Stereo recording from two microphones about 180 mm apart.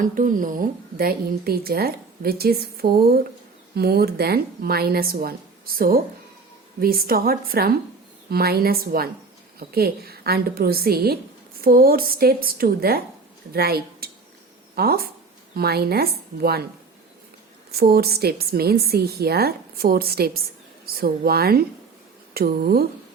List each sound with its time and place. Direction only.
0.0 s a woman's voice: 50° right (ahead or behind)
17.7 s a woman's voice: 60° right (ahead or behind)